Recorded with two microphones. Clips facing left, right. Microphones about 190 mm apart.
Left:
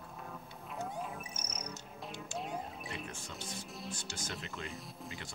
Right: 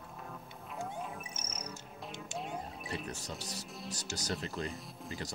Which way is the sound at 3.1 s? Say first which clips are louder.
Right 3 dB; 40° right (ahead or behind).